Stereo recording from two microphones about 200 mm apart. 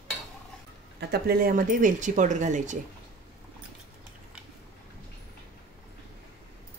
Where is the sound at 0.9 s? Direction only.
55° right (ahead or behind); by 2.8 s 35° right (ahead or behind).